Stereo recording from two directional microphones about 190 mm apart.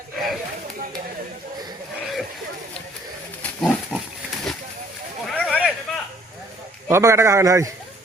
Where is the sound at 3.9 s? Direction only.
Centre (ahead or behind).